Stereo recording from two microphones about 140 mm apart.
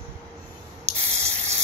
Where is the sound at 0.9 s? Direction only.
50° right (ahead or behind).